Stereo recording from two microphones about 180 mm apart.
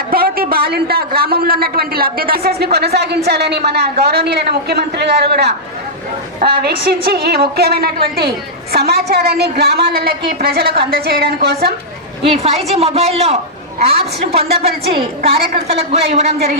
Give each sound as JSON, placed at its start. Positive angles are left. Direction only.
{"t": 0.1, "sound": "a man's voice", "side_deg": -55}
{"t": 6.6, "sound": "a man's voice", "side_deg": -60}
{"t": 12.2, "sound": "a woman's voice", "side_deg": -35}